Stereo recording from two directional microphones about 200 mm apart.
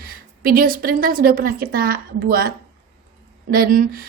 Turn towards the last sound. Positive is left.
turn(degrees=-45)  # may be behind; listen again after turning